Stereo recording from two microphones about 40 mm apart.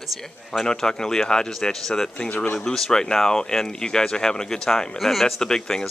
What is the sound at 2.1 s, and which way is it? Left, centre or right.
Speech, left.